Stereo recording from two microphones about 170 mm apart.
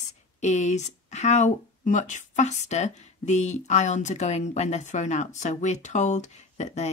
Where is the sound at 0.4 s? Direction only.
45° left (ahead or behind).